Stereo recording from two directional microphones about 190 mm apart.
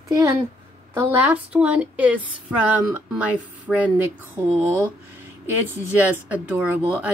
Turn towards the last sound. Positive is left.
turn(degrees=-10)  # may be behind; listen again after turning